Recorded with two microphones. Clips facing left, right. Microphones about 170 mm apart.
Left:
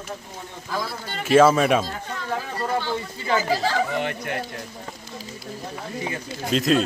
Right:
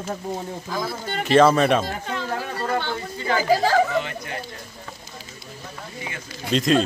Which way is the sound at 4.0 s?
60° left (ahead or behind).